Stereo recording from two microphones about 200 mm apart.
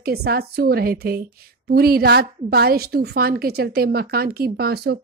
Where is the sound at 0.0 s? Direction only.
50° right (ahead or behind).